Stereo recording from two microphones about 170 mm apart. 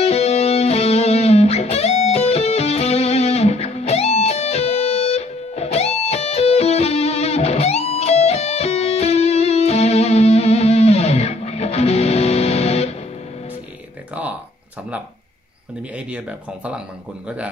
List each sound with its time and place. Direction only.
0.0 s music: 40° left (ahead or behind)
16.1 s speech: 5° right (ahead or behind)